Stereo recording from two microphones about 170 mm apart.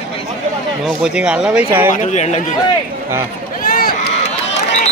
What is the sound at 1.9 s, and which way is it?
Speech, 45° left (ahead or behind).